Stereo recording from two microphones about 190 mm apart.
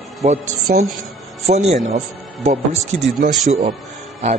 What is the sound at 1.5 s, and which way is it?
A man's voice, 35° right (ahead or behind).